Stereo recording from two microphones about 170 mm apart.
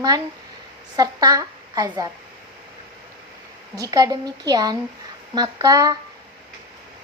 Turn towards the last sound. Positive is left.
turn(degrees=-20)  # may be behind; listen again after turning